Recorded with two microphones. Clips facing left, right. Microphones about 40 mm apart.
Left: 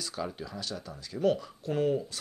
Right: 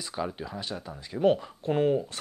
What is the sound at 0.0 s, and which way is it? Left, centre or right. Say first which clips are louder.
Speech: right 3 dB; right.